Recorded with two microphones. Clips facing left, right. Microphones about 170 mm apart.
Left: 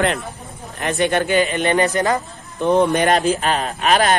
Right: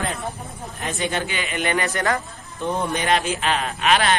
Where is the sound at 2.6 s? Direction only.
70° left (ahead or behind).